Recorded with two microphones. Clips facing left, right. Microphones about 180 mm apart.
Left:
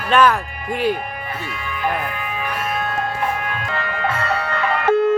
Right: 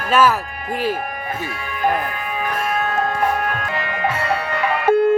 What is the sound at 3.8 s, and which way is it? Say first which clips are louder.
Music: left 1 dB; 15° right (ahead or behind).